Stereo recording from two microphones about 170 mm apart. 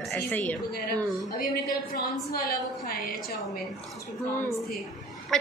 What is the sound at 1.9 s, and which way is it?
A woman's voice, 65° left (ahead or behind).